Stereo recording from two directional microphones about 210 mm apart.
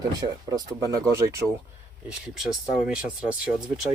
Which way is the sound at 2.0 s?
Centre (ahead or behind).